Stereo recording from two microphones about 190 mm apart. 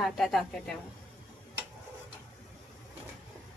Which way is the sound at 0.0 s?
Centre (ahead or behind).